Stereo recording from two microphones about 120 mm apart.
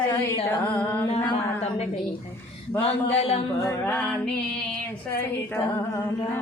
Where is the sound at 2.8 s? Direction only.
60° left (ahead or behind).